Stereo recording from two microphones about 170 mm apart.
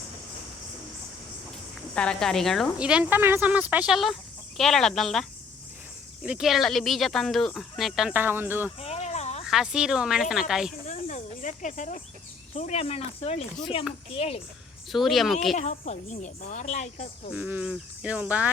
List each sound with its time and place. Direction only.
2.0 s speech: 5° left (ahead or behind)
6.2 s speech: 5° right (ahead or behind)
8.8 s a sound: 40° left (ahead or behind)
9.5 s speech: 5° right (ahead or behind)
10.8 s snake: 45° left (ahead or behind)
12.5 s speech: 40° left (ahead or behind)
14.9 s speech: centre (ahead or behind)
15.5 s speech: 45° left (ahead or behind)
17.3 s speech: 10° right (ahead or behind)